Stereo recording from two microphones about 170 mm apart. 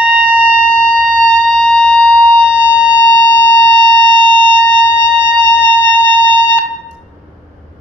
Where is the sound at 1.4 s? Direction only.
5° left (ahead or behind).